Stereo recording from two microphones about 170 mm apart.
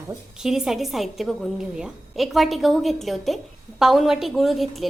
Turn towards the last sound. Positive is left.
turn(degrees=0)  # may be behind; listen again after turning